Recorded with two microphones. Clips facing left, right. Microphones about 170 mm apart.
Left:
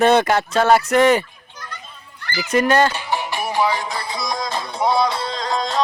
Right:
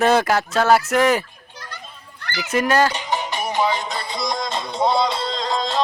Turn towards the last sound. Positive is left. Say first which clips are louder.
# even
turn(degrees=0)  # may be behind; listen again after turning